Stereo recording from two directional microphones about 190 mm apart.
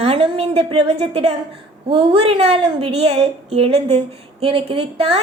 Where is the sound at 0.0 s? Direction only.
30° right (ahead or behind).